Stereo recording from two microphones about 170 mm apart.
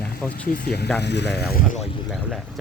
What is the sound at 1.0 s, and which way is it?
Speech, 85° left.